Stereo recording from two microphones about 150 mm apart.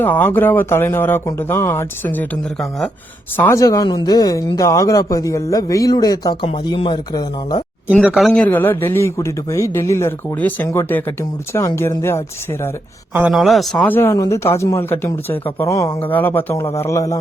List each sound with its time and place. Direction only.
0.0 s a man's voice: 10° left (ahead or behind)
3.3 s speech: 15° left (ahead or behind)
8.0 s speech: centre (ahead or behind)
8.3 s a man's voice: 10° left (ahead or behind)
13.3 s speech: centre (ahead or behind)
13.8 s a man's voice: 15° left (ahead or behind)